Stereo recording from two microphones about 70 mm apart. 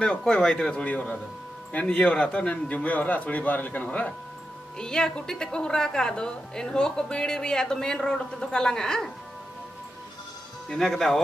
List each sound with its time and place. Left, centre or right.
0.2 s a woman's voice: centre
4.7 s a woman's voice: centre
10.7 s a woman's voice: centre